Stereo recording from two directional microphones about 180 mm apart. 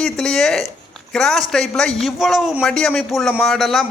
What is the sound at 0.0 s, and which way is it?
Speech, 5° left (ahead or behind).